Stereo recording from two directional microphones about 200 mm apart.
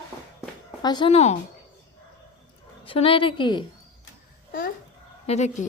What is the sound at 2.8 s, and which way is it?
Speech, 25° left (ahead or behind).